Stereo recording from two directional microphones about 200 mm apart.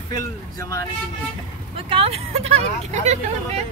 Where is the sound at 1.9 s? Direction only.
30° right (ahead or behind).